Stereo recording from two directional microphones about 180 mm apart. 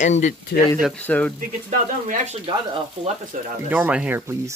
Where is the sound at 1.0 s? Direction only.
10° left (ahead or behind).